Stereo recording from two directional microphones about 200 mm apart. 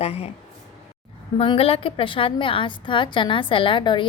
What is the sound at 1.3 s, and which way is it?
A woman's voice, 30° left (ahead or behind).